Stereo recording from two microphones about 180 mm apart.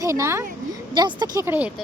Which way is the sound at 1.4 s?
10° right (ahead or behind).